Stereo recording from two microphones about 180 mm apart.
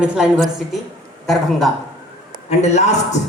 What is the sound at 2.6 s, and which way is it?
Speech, 40° left (ahead or behind).